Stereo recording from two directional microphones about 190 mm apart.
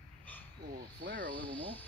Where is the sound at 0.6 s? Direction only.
55° right (ahead or behind).